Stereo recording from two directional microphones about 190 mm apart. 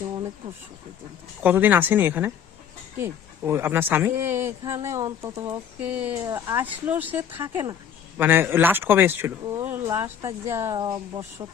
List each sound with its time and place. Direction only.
1.4 s speech: 10° right (ahead or behind)